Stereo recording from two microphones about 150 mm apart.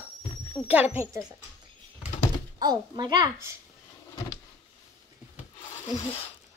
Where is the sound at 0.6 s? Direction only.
10° right (ahead or behind).